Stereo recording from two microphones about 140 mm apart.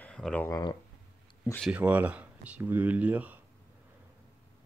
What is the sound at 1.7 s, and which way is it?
Speech, 10° right (ahead or behind).